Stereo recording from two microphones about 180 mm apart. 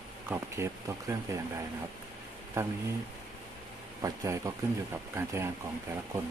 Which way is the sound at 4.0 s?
20° right (ahead or behind).